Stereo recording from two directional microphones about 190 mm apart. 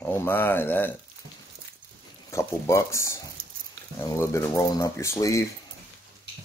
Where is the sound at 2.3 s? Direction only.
15° left (ahead or behind).